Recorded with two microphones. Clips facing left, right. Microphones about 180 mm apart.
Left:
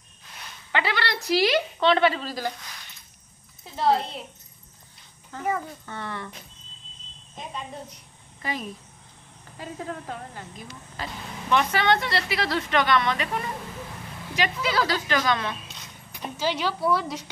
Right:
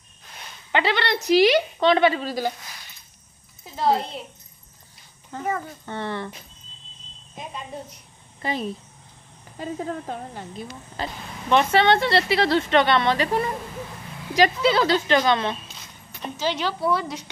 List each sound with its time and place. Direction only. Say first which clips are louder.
0.7 s speech: right 4 dB; 20° right (ahead or behind)
3.7 s speech: right 1 dB; centre (ahead or behind)
5.9 s speech: right 5 dB; 30° right (ahead or behind)
7.4 s speech: right 2 dB; 10° right (ahead or behind)
8.4 s speech: right 5 dB; 30° right (ahead or behind)
16.1 s speech: right 1 dB; 10° left (ahead or behind)